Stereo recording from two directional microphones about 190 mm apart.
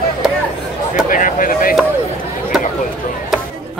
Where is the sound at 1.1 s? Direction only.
45° left (ahead or behind).